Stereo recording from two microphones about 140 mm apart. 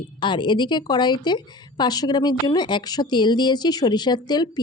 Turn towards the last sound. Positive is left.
turn(degrees=30)  # may be behind; listen again after turning